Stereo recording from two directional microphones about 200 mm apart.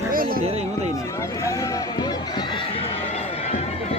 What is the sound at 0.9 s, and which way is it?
Run, 15° left (ahead or behind).